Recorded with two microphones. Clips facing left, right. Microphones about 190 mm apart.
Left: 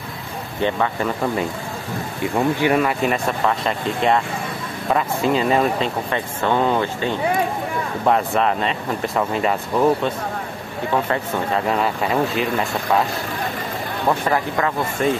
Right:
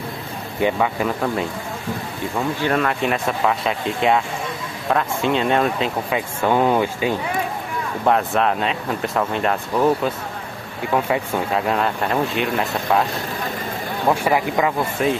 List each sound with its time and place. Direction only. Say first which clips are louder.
0.6 s speech: right 1 dB; 10° right (ahead or behind)
2.3 s speech: left 3 dB; 10° left (ahead or behind); by 7.2 s 10° right (ahead or behind)
8.0 s speech: even; centre (ahead or behind)
14.0 s speech: right 2 dB; 10° right (ahead or behind)